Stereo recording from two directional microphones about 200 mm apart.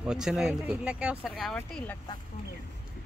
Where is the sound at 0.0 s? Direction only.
5° right (ahead or behind).